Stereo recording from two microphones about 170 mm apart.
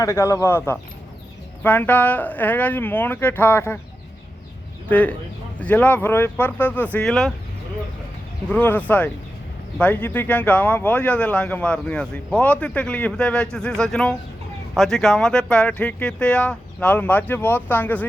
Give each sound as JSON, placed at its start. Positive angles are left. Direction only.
{"t": 0.0, "sound": "speech", "side_deg": 15}
{"t": 4.9, "sound": "speech", "side_deg": 10}
{"t": 8.4, "sound": "speech", "side_deg": 10}